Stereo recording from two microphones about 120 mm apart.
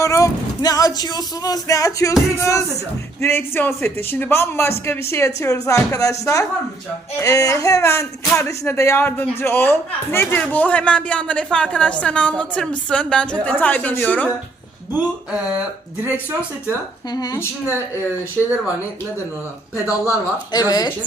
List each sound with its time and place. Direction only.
0.0 s a man's voice: 30° left (ahead or behind)
15.3 s speech: 10° right (ahead or behind)
17.1 s speech: 35° left (ahead or behind)
18.4 s a man's voice: 10° left (ahead or behind)
19.7 s speech: 25° left (ahead or behind)